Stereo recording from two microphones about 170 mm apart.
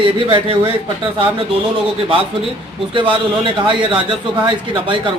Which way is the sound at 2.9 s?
30° right (ahead or behind).